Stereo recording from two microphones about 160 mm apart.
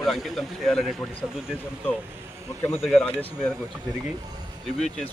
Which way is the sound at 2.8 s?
Centre (ahead or behind).